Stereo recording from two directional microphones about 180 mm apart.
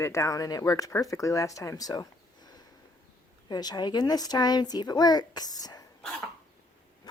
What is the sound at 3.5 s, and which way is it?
Speech, 20° left (ahead or behind).